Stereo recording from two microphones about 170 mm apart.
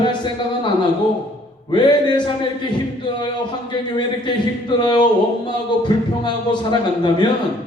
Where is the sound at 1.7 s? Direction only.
25° left (ahead or behind).